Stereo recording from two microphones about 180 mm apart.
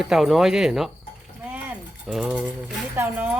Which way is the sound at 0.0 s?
Centre (ahead or behind).